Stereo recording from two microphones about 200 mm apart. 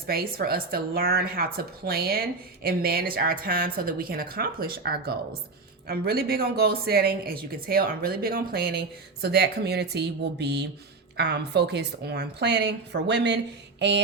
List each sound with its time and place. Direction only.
0.1 s a woman's voice: 50° right (ahead or behind)